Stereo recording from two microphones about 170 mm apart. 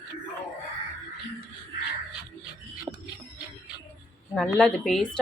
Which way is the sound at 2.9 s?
20° right (ahead or behind).